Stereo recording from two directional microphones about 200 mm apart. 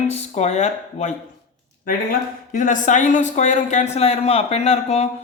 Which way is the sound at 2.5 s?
40° left (ahead or behind).